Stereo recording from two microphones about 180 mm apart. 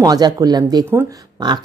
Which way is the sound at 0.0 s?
20° right (ahead or behind).